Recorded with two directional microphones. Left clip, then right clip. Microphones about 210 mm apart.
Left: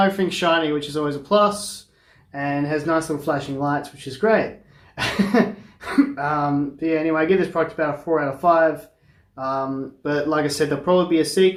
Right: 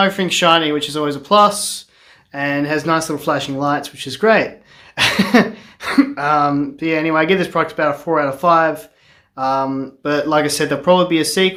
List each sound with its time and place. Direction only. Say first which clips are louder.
0.0 s speech: right 5 dB; 30° right (ahead or behind)